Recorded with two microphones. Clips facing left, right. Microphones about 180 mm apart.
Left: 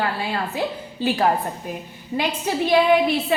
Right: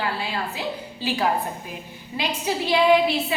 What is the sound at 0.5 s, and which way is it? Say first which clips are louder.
A woman's voice: left 4 dB; 50° left (ahead or behind).